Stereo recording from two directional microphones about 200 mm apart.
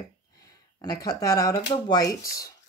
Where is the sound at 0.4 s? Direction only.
20° left (ahead or behind).